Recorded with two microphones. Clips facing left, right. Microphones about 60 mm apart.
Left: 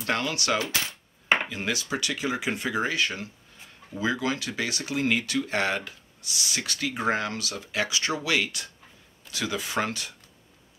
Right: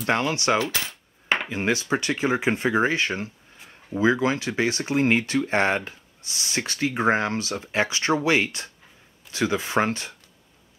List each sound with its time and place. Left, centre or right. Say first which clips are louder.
0.0 s coin: right 5 dB; right
1.5 s speech: right 6 dB; right